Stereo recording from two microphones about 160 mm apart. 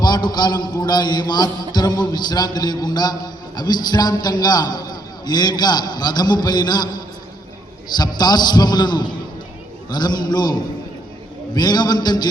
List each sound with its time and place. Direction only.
0.0 s a man's voice: 25° left (ahead or behind)
7.9 s a man's voice: 25° left (ahead or behind)